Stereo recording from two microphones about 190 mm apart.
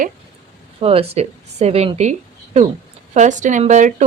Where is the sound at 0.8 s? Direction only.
30° right (ahead or behind).